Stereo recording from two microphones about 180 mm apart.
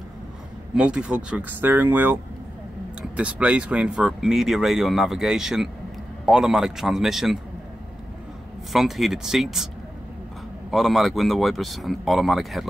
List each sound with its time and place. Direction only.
0.7 s speech: 5° right (ahead or behind)
8.7 s speech: centre (ahead or behind)
10.7 s speech: centre (ahead or behind)